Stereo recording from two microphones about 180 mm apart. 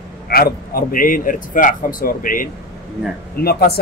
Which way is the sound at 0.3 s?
55° left (ahead or behind).